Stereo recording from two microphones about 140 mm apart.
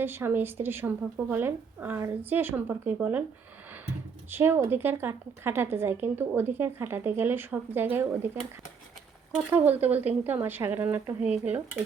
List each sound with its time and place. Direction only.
0.0 s a woman's voice: 15° right (ahead or behind)
4.3 s a woman's voice: 15° right (ahead or behind)
9.3 s a woman's voice: 10° right (ahead or behind)